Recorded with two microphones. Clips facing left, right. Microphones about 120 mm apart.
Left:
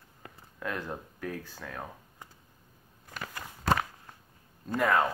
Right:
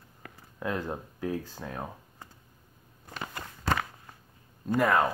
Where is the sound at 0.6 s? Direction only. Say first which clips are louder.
Right 3 dB; 20° right (ahead or behind).